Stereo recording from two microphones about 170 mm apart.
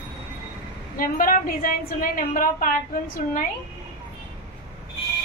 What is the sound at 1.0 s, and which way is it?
A woman's voice, 55° left (ahead or behind).